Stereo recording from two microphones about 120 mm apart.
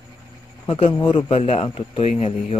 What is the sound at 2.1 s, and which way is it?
Speech, 70° left (ahead or behind).